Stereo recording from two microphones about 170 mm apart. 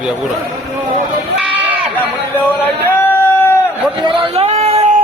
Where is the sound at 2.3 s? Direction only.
10° left (ahead or behind).